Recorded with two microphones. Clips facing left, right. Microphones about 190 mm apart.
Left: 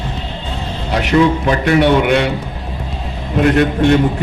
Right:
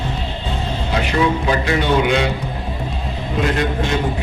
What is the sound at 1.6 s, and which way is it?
Speech, 65° left (ahead or behind).